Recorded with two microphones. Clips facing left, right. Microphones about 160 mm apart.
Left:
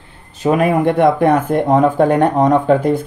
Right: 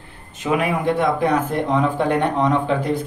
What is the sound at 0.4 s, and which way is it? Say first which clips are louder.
Speech: left 7 dB; 45° left (ahead or behind).